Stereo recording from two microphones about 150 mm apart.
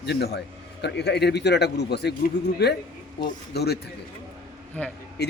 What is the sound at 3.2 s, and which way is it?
Speech, 90° left.